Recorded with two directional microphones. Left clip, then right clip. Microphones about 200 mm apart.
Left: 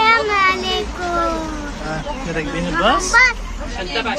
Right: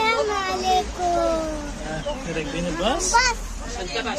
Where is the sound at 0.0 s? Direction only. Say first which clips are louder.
Left 8 dB; 15° right (ahead or behind).